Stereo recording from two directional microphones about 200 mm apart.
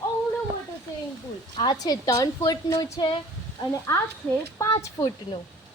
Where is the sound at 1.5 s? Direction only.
20° left (ahead or behind).